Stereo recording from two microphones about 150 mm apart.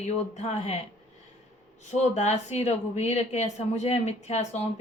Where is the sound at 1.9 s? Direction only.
50° left (ahead or behind).